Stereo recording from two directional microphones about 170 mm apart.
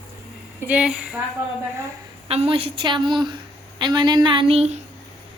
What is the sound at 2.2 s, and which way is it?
Speech, 35° right (ahead or behind).